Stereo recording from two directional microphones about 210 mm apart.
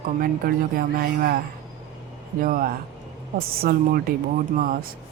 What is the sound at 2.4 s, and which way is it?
Speech, 40° right (ahead or behind).